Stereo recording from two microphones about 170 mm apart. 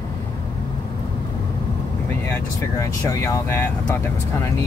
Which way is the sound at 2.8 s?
15° left (ahead or behind).